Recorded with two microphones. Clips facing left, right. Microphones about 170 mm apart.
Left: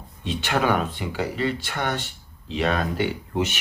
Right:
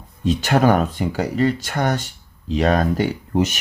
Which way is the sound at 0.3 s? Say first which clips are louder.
Right 7 dB; 40° right (ahead or behind).